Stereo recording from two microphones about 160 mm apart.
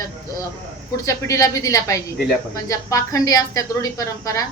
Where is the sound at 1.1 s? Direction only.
20° left (ahead or behind).